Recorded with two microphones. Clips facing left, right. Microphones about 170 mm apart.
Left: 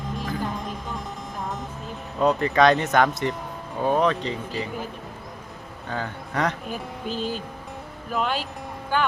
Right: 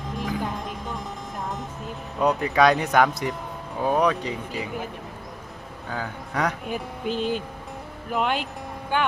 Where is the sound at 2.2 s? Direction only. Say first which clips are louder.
Left 1 dB; 10° right (ahead or behind).